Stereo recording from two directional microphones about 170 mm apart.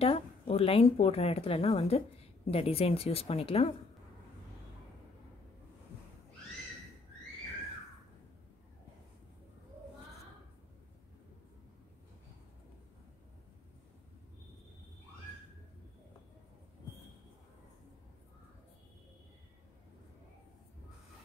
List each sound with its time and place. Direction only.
0.0 s a woman's voice: 35° left (ahead or behind)